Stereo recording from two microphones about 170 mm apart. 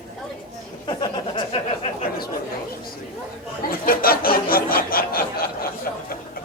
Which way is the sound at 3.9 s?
60° left (ahead or behind).